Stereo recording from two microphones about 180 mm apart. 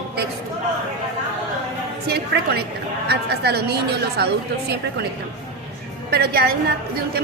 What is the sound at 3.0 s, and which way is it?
A woman's voice, 65° right (ahead or behind).